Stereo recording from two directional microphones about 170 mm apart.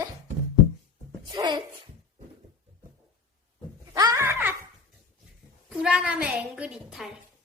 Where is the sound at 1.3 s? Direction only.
25° right (ahead or behind).